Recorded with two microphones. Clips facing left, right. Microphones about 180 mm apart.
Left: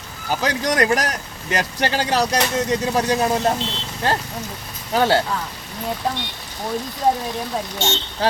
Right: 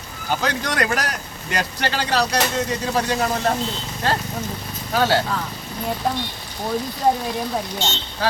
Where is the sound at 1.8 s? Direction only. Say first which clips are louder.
Left 2 dB; 20° left (ahead or behind).